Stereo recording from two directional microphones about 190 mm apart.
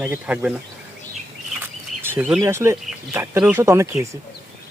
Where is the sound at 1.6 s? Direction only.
10° right (ahead or behind).